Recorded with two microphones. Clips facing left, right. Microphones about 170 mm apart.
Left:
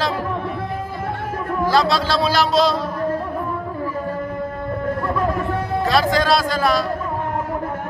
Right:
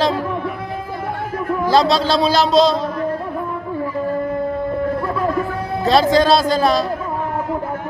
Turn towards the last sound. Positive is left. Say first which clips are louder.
# right 3 dB
turn(degrees=-25)  # may be behind; listen again after turning